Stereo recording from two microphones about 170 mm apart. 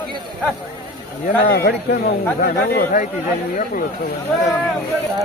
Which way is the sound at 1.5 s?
65° left (ahead or behind).